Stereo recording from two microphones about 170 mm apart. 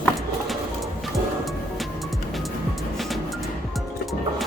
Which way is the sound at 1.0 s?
Centre (ahead or behind).